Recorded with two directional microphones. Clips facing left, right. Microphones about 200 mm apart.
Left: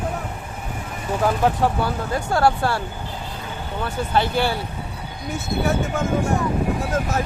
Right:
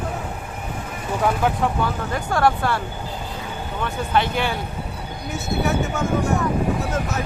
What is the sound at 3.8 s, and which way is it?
Speech, 30° left (ahead or behind).